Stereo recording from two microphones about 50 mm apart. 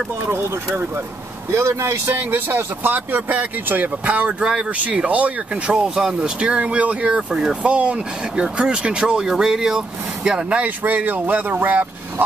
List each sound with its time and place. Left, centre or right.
1.5 s speech: right
2.1 s speech: right
4.4 s speech: centre
5.0 s speech: right
5.9 s speech: centre
6.4 s speech: right
10.8 s speech: right